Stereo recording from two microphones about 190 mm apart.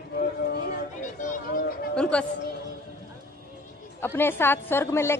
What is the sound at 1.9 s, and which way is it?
Speech, 5° left (ahead or behind).